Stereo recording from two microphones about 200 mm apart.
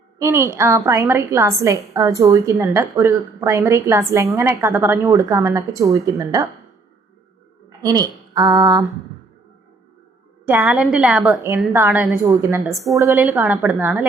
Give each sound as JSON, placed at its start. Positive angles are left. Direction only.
{"t": 0.2, "sound": "a woman's voice", "side_deg": -15}
{"t": 7.9, "sound": "speech", "side_deg": -20}
{"t": 10.4, "sound": "a woman's voice", "side_deg": -10}